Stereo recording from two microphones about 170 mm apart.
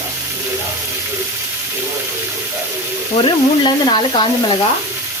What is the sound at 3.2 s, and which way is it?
Sizzle, 25° left (ahead or behind).